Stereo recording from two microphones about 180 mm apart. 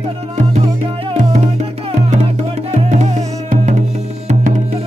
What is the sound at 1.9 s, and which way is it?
Music, 40° right (ahead or behind).